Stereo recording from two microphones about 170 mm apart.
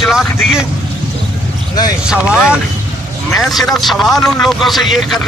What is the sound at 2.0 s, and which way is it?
Speech, 5° right (ahead or behind).